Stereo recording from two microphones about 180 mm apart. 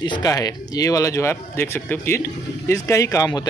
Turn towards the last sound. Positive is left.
turn(degrees=20)  # may be behind; listen again after turning